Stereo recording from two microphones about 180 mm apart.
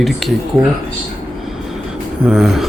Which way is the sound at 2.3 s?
Centre (ahead or behind).